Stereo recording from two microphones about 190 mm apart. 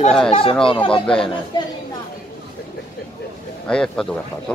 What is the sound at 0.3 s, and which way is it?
Speech, 30° left (ahead or behind).